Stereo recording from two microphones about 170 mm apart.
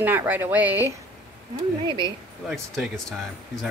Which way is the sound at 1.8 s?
25° right (ahead or behind).